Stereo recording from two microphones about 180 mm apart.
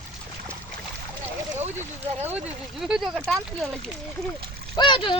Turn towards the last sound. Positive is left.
turn(degrees=25)  # may be behind; listen again after turning